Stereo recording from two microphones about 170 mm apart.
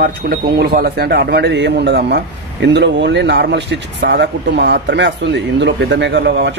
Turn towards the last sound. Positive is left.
turn(degrees=-90)